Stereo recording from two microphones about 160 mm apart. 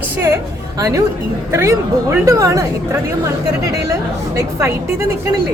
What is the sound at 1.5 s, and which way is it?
Speech, 15° right (ahead or behind).